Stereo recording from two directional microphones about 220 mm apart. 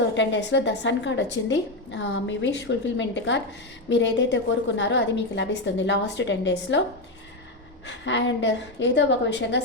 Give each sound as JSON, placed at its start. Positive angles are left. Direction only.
{"t": 0.1, "sound": "a woman's voice", "side_deg": 55}
{"t": 7.9, "sound": "a woman's voice", "side_deg": 55}